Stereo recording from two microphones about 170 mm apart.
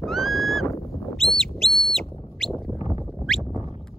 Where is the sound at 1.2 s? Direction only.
Centre (ahead or behind).